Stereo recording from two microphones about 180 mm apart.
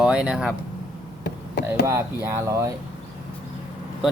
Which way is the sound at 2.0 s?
15° right (ahead or behind).